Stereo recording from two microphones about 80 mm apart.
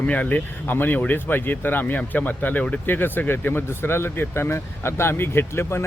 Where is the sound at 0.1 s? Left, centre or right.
Centre.